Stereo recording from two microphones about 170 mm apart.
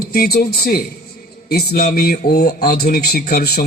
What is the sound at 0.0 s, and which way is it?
Speech, 65° left (ahead or behind).